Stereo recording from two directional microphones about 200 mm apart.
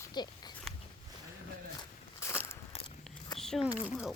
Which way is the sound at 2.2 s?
15° left (ahead or behind).